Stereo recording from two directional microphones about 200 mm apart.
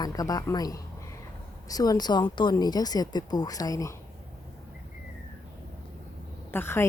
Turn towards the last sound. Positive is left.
turn(degrees=10)  # may be behind; listen again after turning